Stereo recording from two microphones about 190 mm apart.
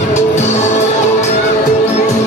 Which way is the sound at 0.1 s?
35° left (ahead or behind).